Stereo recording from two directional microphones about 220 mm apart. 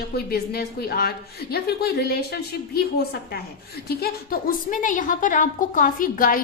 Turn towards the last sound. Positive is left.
turn(degrees=40)  # may be behind; listen again after turning